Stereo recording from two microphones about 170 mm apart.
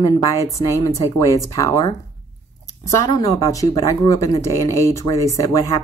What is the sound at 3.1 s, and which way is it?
Speech, 20° left (ahead or behind).